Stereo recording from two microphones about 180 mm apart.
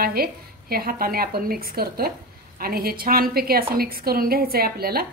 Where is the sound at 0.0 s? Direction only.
55° right (ahead or behind).